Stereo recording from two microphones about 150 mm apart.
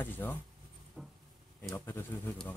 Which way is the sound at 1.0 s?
Centre (ahead or behind).